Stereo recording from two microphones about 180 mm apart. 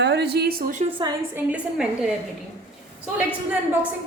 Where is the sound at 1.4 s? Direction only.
5° right (ahead or behind).